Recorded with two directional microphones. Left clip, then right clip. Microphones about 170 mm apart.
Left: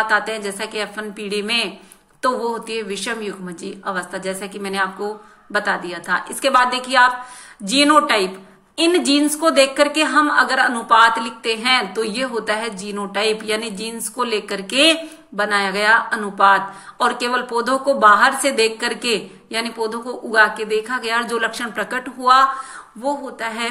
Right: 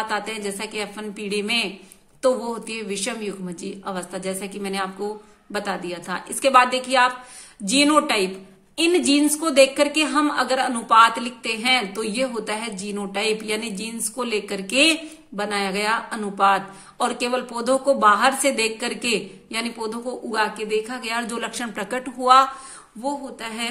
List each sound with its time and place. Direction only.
0.0 s a woman's voice: 45° right (ahead or behind)